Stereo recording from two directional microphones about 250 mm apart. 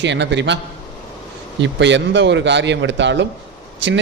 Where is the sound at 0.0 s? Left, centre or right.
Right.